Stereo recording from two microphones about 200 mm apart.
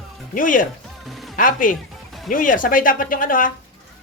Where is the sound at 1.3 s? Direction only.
40° left (ahead or behind).